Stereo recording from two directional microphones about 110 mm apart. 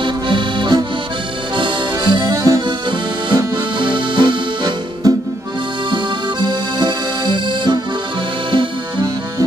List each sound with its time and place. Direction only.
0.0 s accordion: 45° right (ahead or behind)
2.6 s accordion: 45° right (ahead or behind)
3.7 s music: 45° right (ahead or behind)
6.4 s accordion: 40° right (ahead or behind)